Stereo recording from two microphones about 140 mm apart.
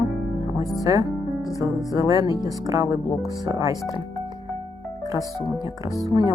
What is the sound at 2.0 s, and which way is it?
Speech, 25° right (ahead or behind).